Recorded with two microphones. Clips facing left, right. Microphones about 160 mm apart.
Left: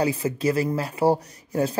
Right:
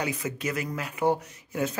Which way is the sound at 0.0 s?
30° left (ahead or behind).